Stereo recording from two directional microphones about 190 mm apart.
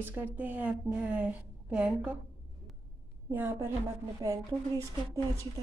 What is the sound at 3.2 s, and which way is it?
A woman's voice, 10° right (ahead or behind).